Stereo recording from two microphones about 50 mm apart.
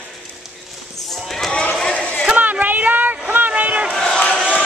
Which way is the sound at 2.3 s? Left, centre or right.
Right.